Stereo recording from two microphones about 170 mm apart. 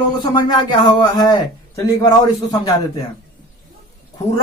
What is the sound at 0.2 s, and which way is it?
Speech, 25° left (ahead or behind).